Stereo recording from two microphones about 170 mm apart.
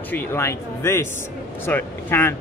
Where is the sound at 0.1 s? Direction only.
15° left (ahead or behind).